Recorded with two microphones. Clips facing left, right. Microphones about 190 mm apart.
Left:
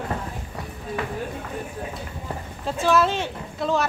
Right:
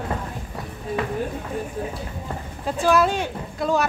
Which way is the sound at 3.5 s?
Centre (ahead or behind).